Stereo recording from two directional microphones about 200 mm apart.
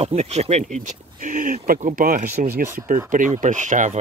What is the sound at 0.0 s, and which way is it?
Speech, 30° right (ahead or behind).